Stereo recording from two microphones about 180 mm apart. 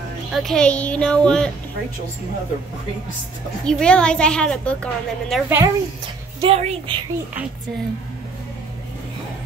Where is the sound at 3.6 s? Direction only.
5° left (ahead or behind).